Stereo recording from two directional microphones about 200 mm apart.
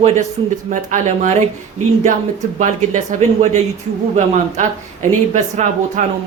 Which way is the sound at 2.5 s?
35° right (ahead or behind).